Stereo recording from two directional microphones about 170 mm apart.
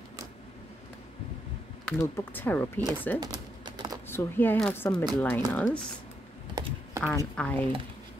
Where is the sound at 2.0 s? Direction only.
15° left (ahead or behind).